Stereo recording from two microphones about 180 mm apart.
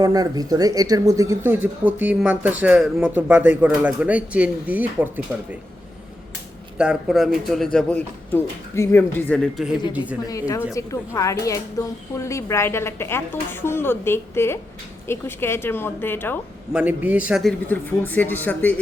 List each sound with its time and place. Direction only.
0.0 s speech: 20° right (ahead or behind)
6.7 s a man's voice: 5° right (ahead or behind)
10.2 s a woman's voice: 20° left (ahead or behind)
16.7 s speech: 10° right (ahead or behind)
17.7 s a woman's voice: 10° left (ahead or behind)